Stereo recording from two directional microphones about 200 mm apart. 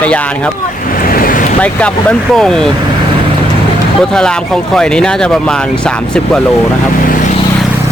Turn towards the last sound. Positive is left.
turn(degrees=5)  # may be behind; listen again after turning